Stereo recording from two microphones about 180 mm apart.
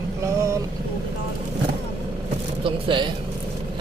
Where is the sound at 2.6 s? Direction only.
25° right (ahead or behind).